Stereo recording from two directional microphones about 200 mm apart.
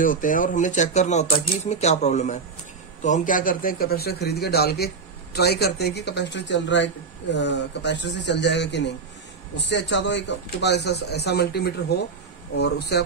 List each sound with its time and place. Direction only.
0.0 s a man's voice: 40° left (ahead or behind)